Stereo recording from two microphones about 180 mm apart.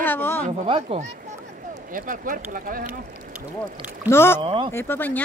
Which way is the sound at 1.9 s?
50° right (ahead or behind).